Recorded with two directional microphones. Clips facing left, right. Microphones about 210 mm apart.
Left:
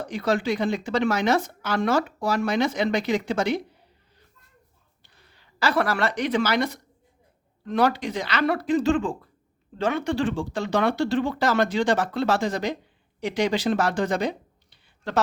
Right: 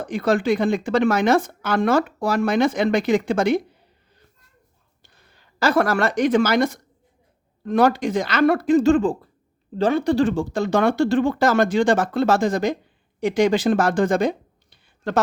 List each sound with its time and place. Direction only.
0.0 s speech: 50° right (ahead or behind)
5.0 s speech: 45° right (ahead or behind)